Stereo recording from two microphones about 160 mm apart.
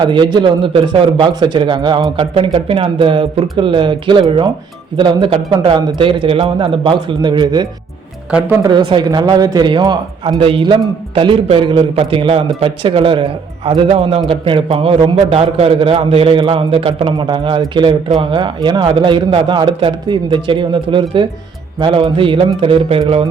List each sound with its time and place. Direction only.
0.0 s a man's voice: 30° right (ahead or behind)
8.3 s speech: 5° right (ahead or behind)
8.6 s a man's voice: 30° right (ahead or behind)